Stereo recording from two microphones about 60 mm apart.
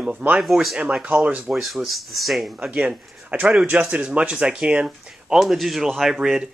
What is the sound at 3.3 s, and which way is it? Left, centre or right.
Speech, right.